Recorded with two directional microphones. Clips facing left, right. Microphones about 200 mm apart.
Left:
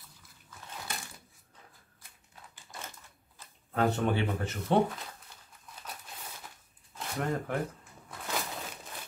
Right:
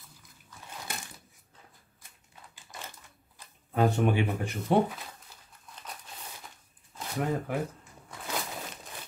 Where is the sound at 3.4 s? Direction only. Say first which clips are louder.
Right 2 dB; 15° right (ahead or behind).